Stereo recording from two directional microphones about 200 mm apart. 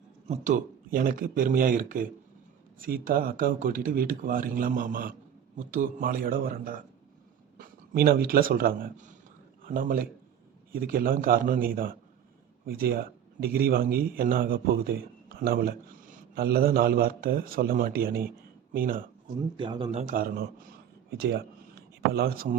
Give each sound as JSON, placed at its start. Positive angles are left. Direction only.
{"t": 0.3, "sound": "a man's voice", "side_deg": -40}
{"t": 19.5, "sound": "a man's voice", "side_deg": -25}